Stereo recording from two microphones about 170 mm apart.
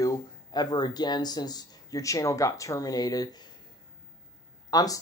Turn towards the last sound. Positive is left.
turn(degrees=20)  # may be behind; listen again after turning